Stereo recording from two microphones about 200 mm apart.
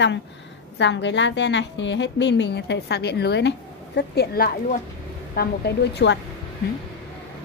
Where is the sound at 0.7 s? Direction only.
65° left (ahead or behind).